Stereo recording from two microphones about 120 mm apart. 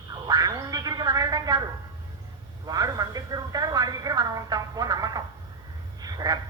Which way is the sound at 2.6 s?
30° right (ahead or behind).